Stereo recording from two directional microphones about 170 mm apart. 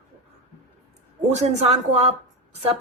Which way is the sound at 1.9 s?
35° right (ahead or behind).